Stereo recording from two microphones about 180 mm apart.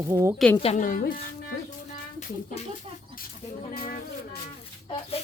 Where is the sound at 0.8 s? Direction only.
50° left (ahead or behind).